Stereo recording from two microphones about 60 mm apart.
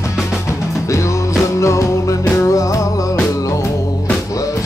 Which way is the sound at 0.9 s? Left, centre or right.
Left.